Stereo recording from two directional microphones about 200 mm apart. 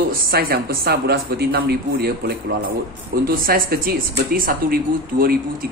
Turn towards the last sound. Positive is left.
turn(degrees=-45)  # may be behind; listen again after turning